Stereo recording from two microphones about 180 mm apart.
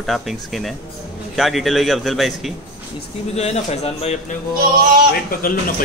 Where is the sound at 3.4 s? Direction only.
35° left (ahead or behind).